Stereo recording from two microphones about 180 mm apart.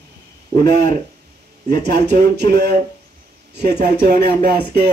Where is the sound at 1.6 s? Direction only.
60° right (ahead or behind).